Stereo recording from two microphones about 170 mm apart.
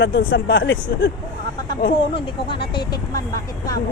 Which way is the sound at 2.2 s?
30° left (ahead or behind).